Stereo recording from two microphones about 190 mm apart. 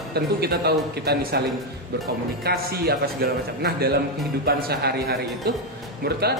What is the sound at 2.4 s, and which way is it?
Speech, 55° right (ahead or behind).